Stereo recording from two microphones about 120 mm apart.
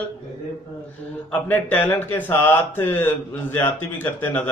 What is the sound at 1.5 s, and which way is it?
A man's voice, 15° left (ahead or behind).